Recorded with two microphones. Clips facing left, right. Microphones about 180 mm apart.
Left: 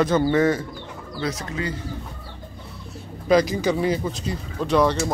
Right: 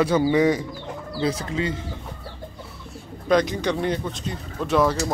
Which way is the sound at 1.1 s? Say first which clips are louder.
Right 3 dB; 30° right (ahead or behind).